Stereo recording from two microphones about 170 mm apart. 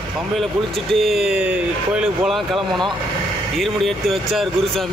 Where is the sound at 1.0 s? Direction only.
5° right (ahead or behind).